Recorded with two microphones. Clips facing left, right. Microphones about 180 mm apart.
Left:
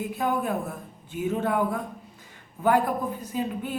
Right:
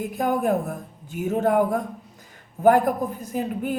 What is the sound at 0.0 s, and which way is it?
A woman's voice, 45° right (ahead or behind).